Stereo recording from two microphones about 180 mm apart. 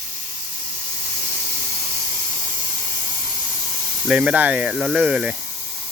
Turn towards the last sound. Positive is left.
turn(degrees=-5)  # may be behind; listen again after turning